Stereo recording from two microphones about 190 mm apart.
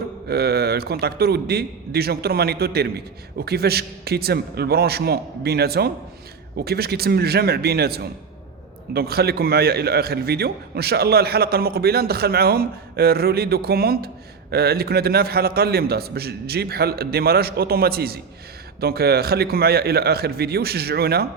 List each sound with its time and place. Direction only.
0.3 s a man's voice: 55° right (ahead or behind)